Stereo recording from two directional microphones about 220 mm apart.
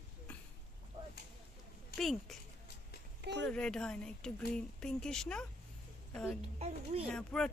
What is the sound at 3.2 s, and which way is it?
Speech, 50° right (ahead or behind).